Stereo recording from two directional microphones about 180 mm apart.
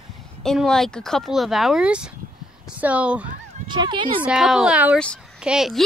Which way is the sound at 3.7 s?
25° right (ahead or behind).